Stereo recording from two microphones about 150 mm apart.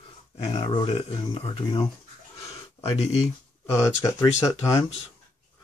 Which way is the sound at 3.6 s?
20° left (ahead or behind).